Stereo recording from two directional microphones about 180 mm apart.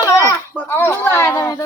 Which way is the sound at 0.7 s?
10° left (ahead or behind).